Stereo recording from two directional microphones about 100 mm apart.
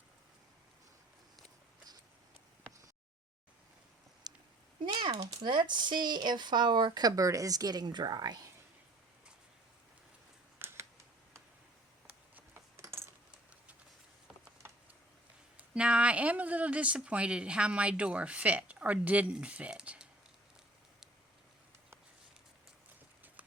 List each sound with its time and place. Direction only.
4.3 s a sound: 40° right (ahead or behind)
5.1 s speech: 35° right (ahead or behind)
5.5 s speech: 50° right (ahead or behind)
10.6 s typing: 25° right (ahead or behind)
12.0 s a sound: 15° right (ahead or behind)
12.7 s coin: 25° right (ahead or behind)
15.5 s speech: 10° right (ahead or behind)